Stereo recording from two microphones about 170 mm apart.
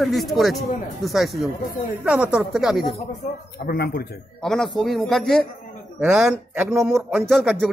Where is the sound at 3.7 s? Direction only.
65° left (ahead or behind).